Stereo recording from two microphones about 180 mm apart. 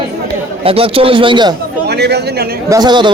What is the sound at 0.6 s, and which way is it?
Speech, 30° right (ahead or behind).